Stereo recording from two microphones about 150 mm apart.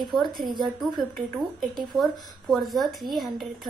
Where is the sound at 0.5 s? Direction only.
30° right (ahead or behind).